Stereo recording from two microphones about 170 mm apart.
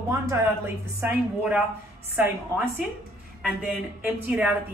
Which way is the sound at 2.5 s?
15° left (ahead or behind).